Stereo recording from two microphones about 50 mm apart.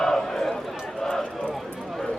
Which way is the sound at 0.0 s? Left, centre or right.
Centre.